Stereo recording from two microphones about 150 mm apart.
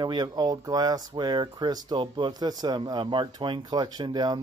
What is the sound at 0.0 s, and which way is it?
Speech, 30° right (ahead or behind).